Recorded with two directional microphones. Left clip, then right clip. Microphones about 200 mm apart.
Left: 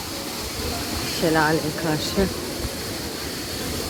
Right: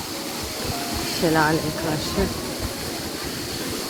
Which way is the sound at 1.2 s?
15° left (ahead or behind).